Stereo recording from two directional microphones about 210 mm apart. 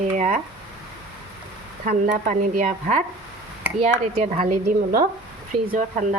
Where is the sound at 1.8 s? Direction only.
40° right (ahead or behind).